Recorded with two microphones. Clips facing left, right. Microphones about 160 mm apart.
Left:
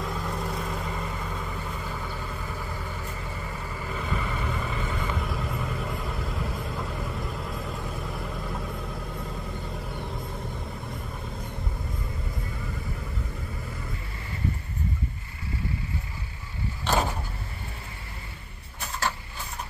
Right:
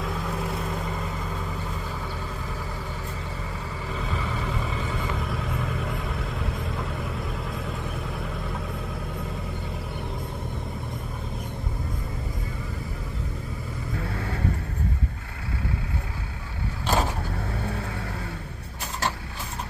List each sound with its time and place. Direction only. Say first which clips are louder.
0.0 s vehicle: right 1 dB; centre (ahead or behind)
3.9 s vehicle: even; centre (ahead or behind)
13.9 s vehicle: right 8 dB; 65° right (ahead or behind)
16.8 s vehicle: right 1 dB; 5° right (ahead or behind)